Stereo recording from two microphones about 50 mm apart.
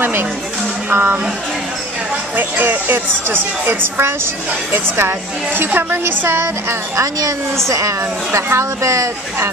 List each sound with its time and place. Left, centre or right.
0.9 s a woman's voice: right
2.3 s a woman's voice: right
7.0 s speech: right